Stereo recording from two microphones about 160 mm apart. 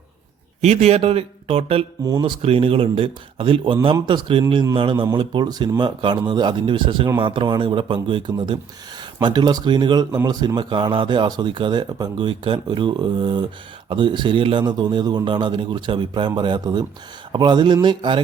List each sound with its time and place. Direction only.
0.6 s speech: 40° right (ahead or behind)
2.0 s speech: 25° right (ahead or behind)